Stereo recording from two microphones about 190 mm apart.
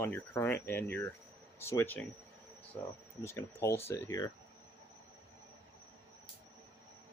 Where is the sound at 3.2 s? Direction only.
15° left (ahead or behind).